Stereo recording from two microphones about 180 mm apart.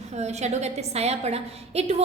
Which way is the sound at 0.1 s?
40° right (ahead or behind).